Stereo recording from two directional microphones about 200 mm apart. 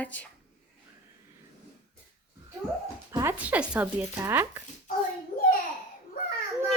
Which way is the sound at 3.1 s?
15° right (ahead or behind).